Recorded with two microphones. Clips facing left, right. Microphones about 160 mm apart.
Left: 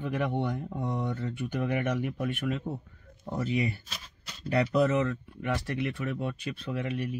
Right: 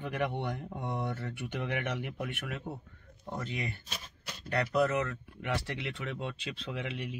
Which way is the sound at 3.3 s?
5° left (ahead or behind).